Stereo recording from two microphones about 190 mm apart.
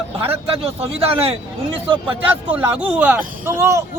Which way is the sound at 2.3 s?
10° right (ahead or behind).